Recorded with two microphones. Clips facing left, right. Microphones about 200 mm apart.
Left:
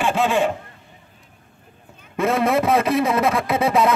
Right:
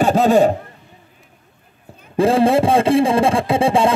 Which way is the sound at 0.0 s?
40° right (ahead or behind).